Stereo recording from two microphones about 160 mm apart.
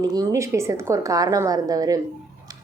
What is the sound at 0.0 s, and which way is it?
A woman's voice, 25° right (ahead or behind).